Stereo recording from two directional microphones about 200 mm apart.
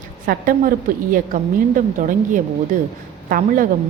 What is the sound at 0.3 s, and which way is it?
A woman's voice, 45° right (ahead or behind).